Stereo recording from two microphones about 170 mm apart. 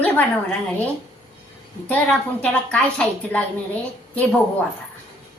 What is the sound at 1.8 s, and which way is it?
A woman's voice, 10° left (ahead or behind).